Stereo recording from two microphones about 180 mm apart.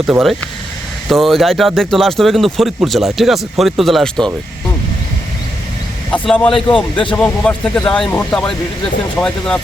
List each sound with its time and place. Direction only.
0.1 s speech: centre (ahead or behind)
6.1 s speech: 5° left (ahead or behind)
6.9 s speech: 25° left (ahead or behind)
7.2 s speech: 5° left (ahead or behind)